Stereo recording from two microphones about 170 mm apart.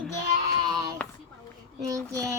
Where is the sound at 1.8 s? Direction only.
20° right (ahead or behind).